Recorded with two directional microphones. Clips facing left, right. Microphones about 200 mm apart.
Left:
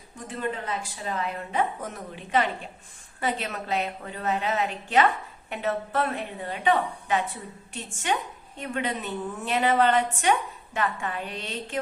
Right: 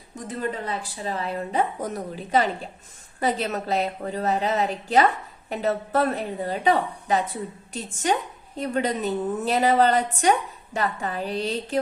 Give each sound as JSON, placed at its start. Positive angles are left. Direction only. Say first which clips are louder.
{"t": 0.3, "sound": "a woman's voice", "louder": "right 2 dB", "side_deg": -35}